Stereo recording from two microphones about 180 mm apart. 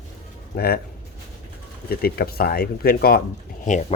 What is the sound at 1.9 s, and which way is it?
Speech, 60° left (ahead or behind).